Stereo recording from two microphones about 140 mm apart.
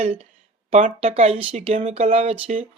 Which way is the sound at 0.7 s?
65° right (ahead or behind).